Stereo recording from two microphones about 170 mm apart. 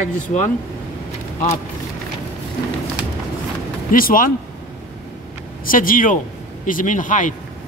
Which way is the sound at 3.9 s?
55° left (ahead or behind).